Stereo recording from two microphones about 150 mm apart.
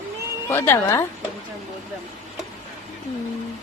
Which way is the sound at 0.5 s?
15° left (ahead or behind).